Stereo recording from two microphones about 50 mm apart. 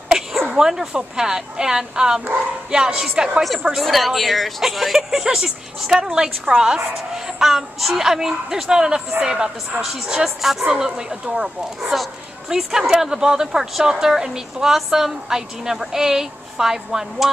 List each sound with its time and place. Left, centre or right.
0.1 s a woman's voice: centre
3.7 s a woman's voice: centre
11.9 s a woman's voice: centre